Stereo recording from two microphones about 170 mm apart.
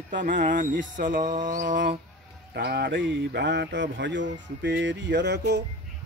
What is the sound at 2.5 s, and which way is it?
Speech, 70° right (ahead or behind).